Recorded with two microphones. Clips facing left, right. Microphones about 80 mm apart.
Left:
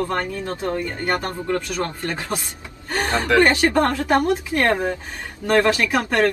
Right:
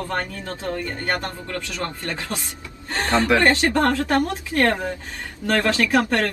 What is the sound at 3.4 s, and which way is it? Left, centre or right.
Speech, left.